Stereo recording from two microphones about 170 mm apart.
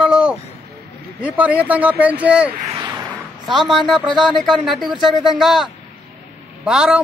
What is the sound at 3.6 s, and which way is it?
Speech, centre (ahead or behind).